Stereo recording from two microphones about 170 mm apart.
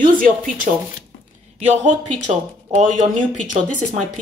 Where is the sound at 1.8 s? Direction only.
45° right (ahead or behind).